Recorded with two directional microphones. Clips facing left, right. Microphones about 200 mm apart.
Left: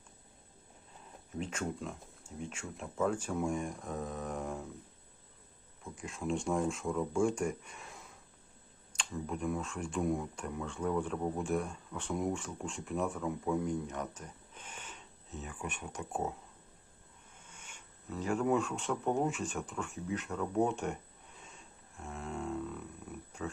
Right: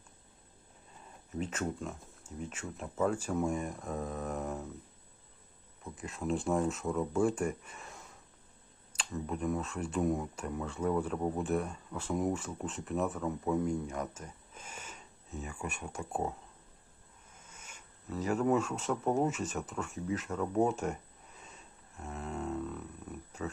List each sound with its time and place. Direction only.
1.4 s speech: 5° right (ahead or behind)
5.8 s speech: 5° right (ahead or behind)
17.4 s a sound: 40° right (ahead or behind)
18.1 s speech: 5° right (ahead or behind)
20.7 s a sound: 5° right (ahead or behind)
23.4 s speech: 5° right (ahead or behind)